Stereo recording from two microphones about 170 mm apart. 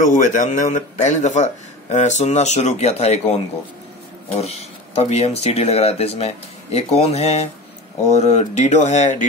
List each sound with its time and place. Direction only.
0.0 s a man's voice: 50° left (ahead or behind)
4.4 s a man's voice: 40° left (ahead or behind)